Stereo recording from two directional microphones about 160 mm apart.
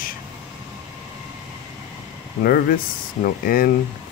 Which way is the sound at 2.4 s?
65° left (ahead or behind).